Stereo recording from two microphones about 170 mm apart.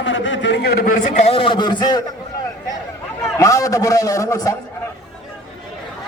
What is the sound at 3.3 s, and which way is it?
A man's voice, 20° left (ahead or behind).